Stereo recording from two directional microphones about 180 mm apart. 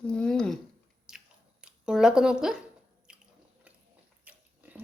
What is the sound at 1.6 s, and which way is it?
Speech, 5° right (ahead or behind).